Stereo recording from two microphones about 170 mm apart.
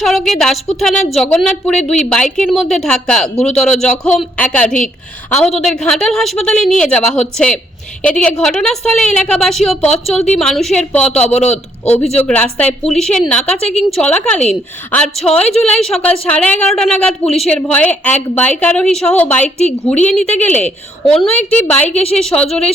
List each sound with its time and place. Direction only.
0.0 s a woman's voice: centre (ahead or behind)
21.8 s a woman's voice: 40° left (ahead or behind)
22.4 s a woman's voice: 5° left (ahead or behind)